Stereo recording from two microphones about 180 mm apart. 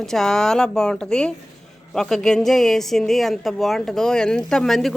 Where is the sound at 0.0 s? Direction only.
Centre (ahead or behind).